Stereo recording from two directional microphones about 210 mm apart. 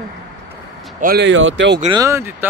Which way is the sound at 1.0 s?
50° right (ahead or behind).